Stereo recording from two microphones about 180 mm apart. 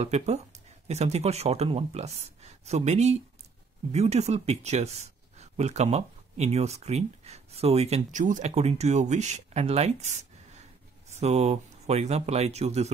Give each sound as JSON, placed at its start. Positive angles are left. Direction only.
{"t": 0.0, "sound": "speech", "side_deg": -35}